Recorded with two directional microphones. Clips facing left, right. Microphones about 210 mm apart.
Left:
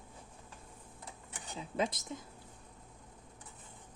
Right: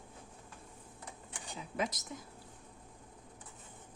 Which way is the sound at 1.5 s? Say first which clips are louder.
Left 2 dB; 30° left (ahead or behind).